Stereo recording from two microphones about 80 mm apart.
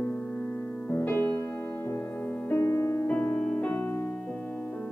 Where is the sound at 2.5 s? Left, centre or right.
Left.